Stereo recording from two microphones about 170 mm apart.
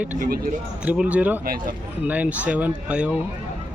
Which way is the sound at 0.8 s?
5° right (ahead or behind).